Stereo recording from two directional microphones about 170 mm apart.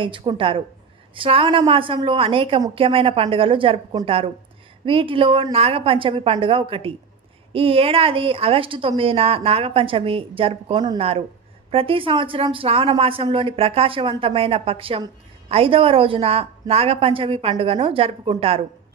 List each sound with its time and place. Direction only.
0.0 s a woman's voice: 30° right (ahead or behind)